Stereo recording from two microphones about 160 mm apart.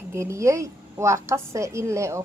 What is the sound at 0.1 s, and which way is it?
A woman's voice, 15° right (ahead or behind).